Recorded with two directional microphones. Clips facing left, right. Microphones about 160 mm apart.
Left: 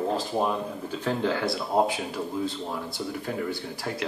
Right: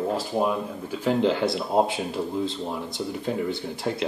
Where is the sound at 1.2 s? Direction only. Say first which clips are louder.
Right 5 dB; 20° right (ahead or behind).